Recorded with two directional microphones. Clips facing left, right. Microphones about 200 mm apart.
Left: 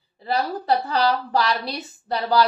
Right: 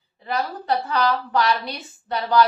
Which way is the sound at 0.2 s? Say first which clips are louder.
Left 2 dB; 35° left (ahead or behind).